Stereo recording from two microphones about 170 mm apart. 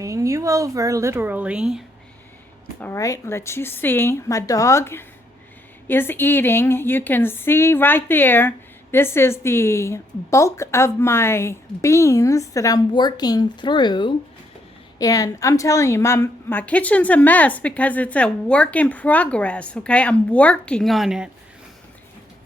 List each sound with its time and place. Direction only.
0.0 s speech: 20° right (ahead or behind)
2.8 s a woman's voice: 15° left (ahead or behind); by 21.2 s centre (ahead or behind)